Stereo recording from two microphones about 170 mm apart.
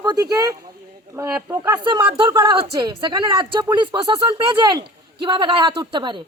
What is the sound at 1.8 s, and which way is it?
Speech, 30° right (ahead or behind).